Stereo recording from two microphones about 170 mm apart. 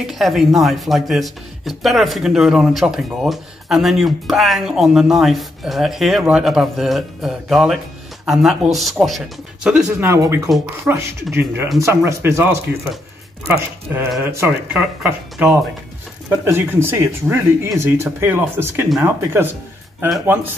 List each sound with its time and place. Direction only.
0.0 s speech: centre (ahead or behind); by 10.5 s 15° right (ahead or behind)
10.9 s speech: 5° right (ahead or behind)